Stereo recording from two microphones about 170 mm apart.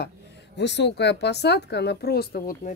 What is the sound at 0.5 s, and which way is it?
Speech, 90° left.